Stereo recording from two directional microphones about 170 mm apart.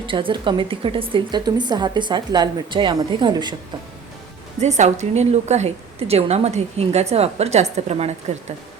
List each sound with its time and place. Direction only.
0.0 s a woman's voice: 30° right (ahead or behind)
4.6 s a woman's voice: 40° right (ahead or behind)